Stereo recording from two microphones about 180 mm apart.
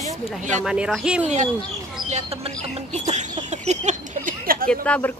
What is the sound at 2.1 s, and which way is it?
Speech, 35° right (ahead or behind).